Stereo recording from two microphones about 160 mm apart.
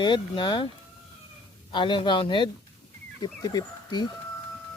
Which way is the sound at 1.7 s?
30° left (ahead or behind).